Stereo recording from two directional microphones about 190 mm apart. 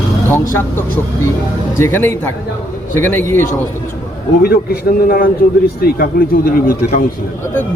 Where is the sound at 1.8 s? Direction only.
10° left (ahead or behind).